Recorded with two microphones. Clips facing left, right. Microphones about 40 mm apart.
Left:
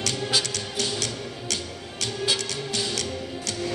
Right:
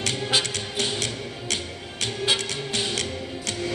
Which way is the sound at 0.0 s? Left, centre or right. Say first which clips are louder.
Right 1 dB; right.